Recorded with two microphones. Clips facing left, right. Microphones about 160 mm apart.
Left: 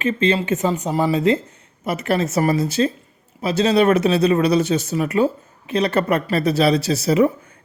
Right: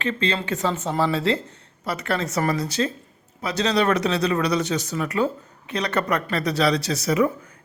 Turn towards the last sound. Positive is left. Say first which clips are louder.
# left 5 dB
turn(degrees=30)  # may be behind; listen again after turning